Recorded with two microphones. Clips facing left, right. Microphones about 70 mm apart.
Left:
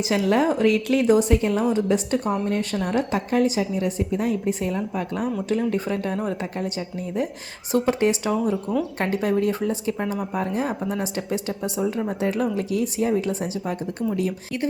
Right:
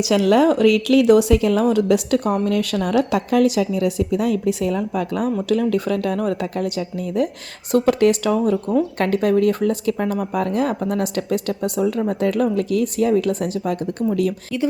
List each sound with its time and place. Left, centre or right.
0.0 s speech: right
4.9 s speech: right
7.7 s speech: right